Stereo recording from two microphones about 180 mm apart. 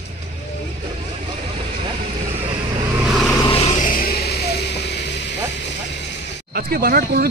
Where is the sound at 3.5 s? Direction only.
35° left (ahead or behind); by 4.4 s 60° left (ahead or behind).